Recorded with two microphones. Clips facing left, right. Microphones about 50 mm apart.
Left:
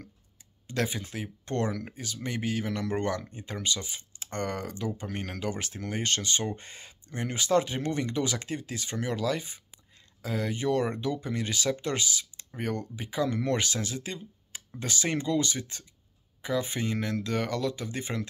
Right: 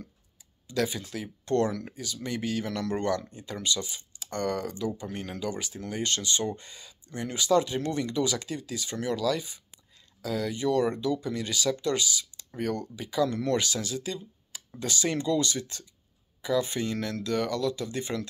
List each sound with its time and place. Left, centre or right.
0.7 s speech: left
5.0 s speech: left